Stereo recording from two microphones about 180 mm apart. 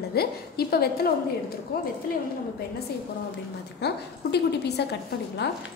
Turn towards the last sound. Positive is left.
turn(degrees=70)  # may be behind; listen again after turning